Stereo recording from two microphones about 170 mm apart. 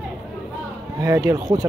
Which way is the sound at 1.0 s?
20° right (ahead or behind).